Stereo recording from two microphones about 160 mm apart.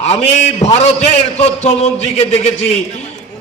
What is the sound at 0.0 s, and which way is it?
A man's voice, 40° left (ahead or behind).